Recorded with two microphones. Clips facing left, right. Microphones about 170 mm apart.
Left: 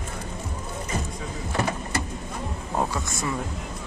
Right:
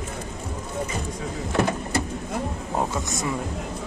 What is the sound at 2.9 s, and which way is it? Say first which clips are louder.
Speech: right 2 dB; 20° right (ahead or behind).